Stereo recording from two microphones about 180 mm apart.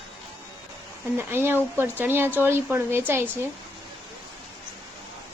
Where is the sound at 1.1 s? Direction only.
10° right (ahead or behind).